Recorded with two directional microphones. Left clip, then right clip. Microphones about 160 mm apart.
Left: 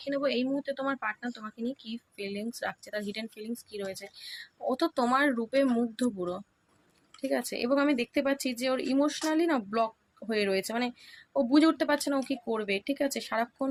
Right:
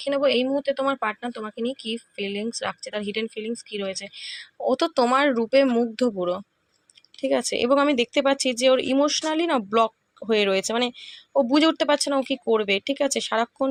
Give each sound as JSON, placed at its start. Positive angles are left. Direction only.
{"t": 0.0, "sound": "speech", "side_deg": -40}